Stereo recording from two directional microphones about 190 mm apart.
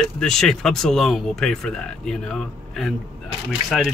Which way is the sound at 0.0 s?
5° left (ahead or behind).